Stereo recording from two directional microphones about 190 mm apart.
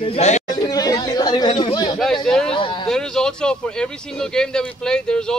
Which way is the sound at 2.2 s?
5° left (ahead or behind).